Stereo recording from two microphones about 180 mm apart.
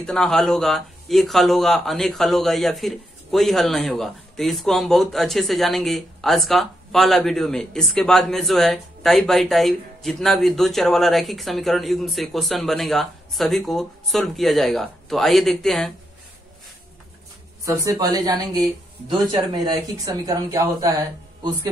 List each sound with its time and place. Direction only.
0.0 s speech: 5° left (ahead or behind)
17.6 s speech: 20° right (ahead or behind)